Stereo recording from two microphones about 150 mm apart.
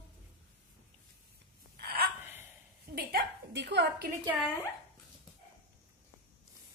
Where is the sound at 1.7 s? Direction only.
90° right.